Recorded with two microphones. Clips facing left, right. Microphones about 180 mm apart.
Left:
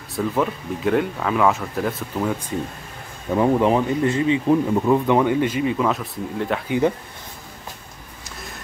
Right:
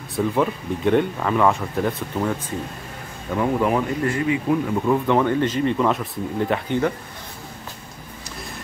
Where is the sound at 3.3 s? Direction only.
25° left (ahead or behind).